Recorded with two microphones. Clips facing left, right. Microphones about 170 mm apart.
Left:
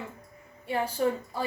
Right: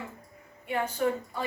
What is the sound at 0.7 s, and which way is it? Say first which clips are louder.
Speech: left 1 dB; 35° left (ahead or behind).